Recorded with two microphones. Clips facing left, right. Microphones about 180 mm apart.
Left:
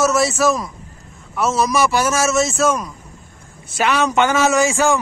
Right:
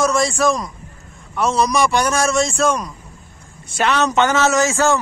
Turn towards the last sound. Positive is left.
turn(degrees=15)  # may be behind; listen again after turning